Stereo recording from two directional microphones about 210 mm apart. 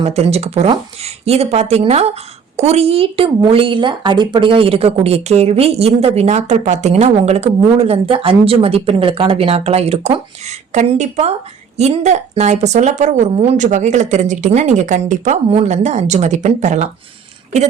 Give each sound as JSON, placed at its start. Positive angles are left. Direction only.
{"t": 0.0, "sound": "speech", "side_deg": -30}